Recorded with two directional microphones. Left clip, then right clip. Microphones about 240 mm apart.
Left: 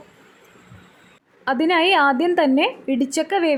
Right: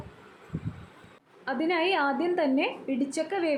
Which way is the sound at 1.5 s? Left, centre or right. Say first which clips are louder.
Left 9 dB; left.